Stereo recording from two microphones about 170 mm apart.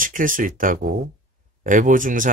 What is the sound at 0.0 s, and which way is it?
Speech, 55° right (ahead or behind).